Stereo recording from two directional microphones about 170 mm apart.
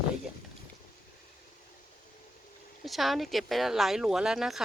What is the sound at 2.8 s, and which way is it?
A woman's voice, centre (ahead or behind).